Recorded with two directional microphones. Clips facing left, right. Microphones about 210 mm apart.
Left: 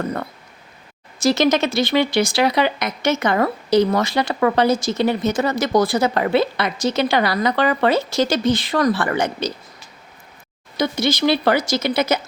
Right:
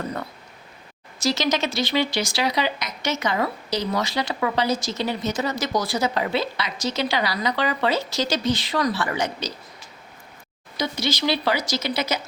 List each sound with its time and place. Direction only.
1.2 s speech: 55° left (ahead or behind)
10.8 s speech: 55° left (ahead or behind)